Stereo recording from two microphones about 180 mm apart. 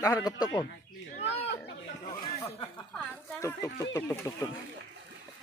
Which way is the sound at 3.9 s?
15° left (ahead or behind).